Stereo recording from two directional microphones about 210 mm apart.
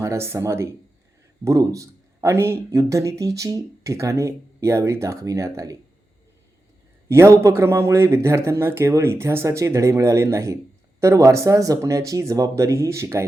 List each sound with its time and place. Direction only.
0.0 s speech: 15° right (ahead or behind)
7.1 s speech: 15° right (ahead or behind)